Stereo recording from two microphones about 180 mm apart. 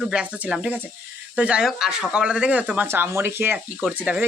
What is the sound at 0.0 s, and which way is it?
Speech, 5° right (ahead or behind).